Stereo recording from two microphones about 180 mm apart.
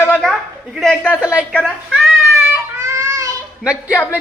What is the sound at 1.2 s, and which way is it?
Speech, 5° right (ahead or behind).